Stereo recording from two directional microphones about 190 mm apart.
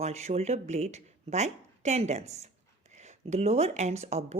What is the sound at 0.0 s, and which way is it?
Speech, 35° right (ahead or behind).